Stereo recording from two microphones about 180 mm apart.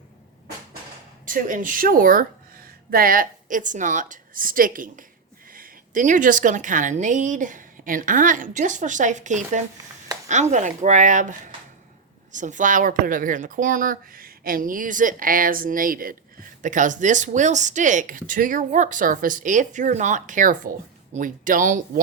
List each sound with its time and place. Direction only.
1.2 s a woman's voice: 50° right (ahead or behind)